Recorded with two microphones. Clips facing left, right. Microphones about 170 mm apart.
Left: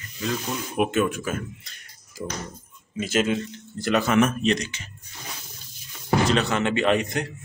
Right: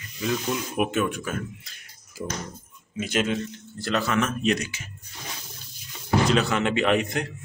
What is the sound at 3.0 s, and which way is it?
Speech, 5° left (ahead or behind).